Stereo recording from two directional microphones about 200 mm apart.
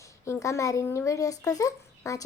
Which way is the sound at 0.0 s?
15° left (ahead or behind).